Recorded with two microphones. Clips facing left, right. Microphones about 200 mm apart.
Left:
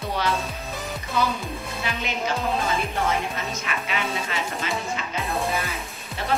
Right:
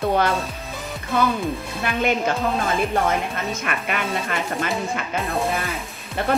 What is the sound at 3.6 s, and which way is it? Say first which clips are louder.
Speech: right 3 dB; 55° right (ahead or behind).